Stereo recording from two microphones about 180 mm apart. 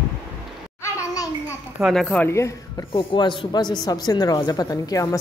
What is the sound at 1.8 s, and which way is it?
Speech, centre (ahead or behind).